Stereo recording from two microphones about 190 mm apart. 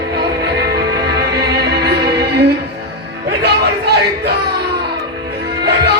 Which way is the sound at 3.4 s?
60° right (ahead or behind).